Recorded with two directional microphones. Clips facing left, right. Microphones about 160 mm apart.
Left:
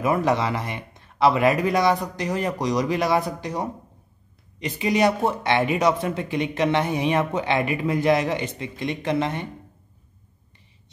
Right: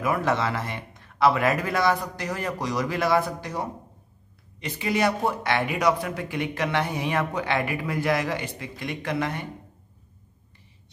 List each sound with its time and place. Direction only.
0.0 s speech: 20° left (ahead or behind)